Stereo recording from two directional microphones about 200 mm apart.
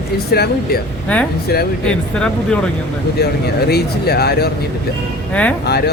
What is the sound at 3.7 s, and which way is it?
Speech, 50° left (ahead or behind).